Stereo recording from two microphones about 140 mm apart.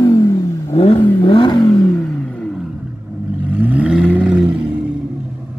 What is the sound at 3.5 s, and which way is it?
Vehicle, 10° right (ahead or behind).